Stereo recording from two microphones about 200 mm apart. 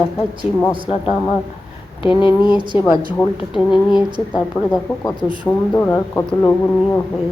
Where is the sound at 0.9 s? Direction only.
25° left (ahead or behind).